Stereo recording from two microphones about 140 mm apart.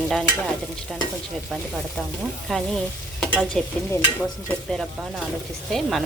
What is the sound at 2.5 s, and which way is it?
Stir, 5° left (ahead or behind).